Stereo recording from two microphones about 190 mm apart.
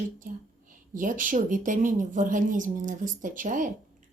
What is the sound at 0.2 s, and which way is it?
A woman's voice, 45° right (ahead or behind).